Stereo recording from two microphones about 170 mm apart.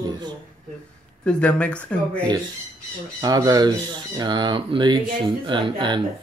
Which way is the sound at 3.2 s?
20° right (ahead or behind).